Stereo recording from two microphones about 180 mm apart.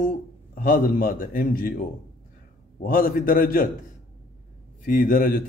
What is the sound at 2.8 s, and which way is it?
Speech, 50° left (ahead or behind).